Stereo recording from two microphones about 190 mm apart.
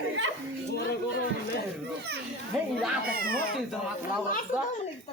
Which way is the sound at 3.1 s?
50° right (ahead or behind).